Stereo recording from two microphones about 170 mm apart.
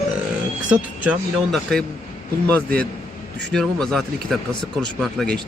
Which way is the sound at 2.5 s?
10° left (ahead or behind).